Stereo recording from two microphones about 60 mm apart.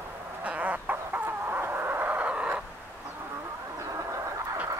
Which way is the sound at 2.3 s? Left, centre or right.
Centre.